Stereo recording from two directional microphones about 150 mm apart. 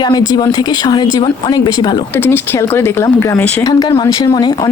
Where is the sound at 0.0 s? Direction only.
30° left (ahead or behind).